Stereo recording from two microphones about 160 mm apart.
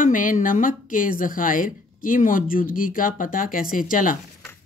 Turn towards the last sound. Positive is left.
turn(degrees=60)  # may be behind; listen again after turning